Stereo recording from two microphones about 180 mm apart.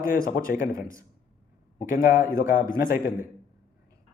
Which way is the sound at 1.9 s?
50° left (ahead or behind).